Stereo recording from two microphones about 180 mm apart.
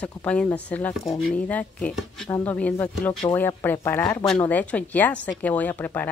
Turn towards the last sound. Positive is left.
turn(degrees=10)  # may be behind; listen again after turning